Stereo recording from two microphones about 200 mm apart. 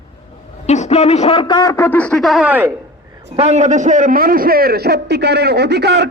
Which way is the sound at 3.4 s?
35° right (ahead or behind).